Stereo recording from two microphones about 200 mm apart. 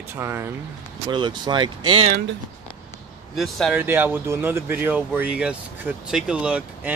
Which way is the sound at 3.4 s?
Centre (ahead or behind).